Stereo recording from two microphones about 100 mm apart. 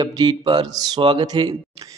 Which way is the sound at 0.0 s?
45° right (ahead or behind).